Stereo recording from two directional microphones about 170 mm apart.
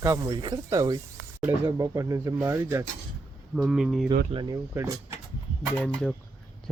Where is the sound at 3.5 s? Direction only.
5° right (ahead or behind).